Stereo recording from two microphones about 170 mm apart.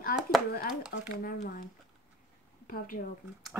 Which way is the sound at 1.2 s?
60° left (ahead or behind).